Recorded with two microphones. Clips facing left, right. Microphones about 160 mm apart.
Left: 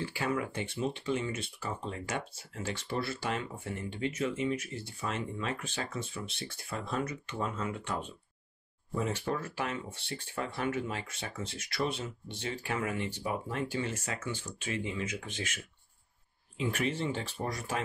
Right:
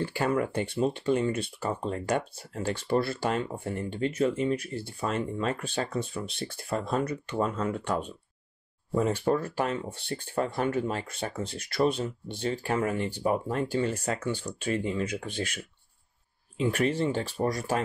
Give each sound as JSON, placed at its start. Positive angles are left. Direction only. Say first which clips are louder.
{"t": 0.0, "sound": "speech", "louder": "right 6 dB", "side_deg": -55}
{"t": 1.2, "sound": "speech", "louder": "right 8 dB", "side_deg": -35}
{"t": 1.9, "sound": "speech", "louder": "right 8 dB", "side_deg": -45}
{"t": 14.5, "sound": "speech", "louder": "right 7 dB", "side_deg": -60}
{"t": 14.8, "sound": "speech", "louder": "right 6 dB", "side_deg": -40}